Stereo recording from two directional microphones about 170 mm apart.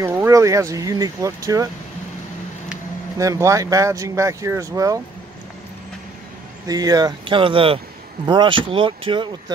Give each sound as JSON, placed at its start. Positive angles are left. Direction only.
{"t": 0.0, "sound": "speech", "side_deg": -15}
{"t": 3.2, "sound": "speech", "side_deg": -20}
{"t": 6.7, "sound": "speech", "side_deg": -20}